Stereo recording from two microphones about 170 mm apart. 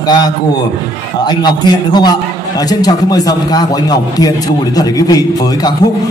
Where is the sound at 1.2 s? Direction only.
25° left (ahead or behind).